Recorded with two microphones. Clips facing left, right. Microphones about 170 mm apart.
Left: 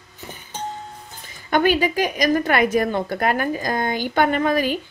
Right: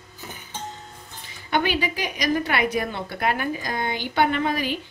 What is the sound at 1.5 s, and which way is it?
A woman's voice, 45° left (ahead or behind).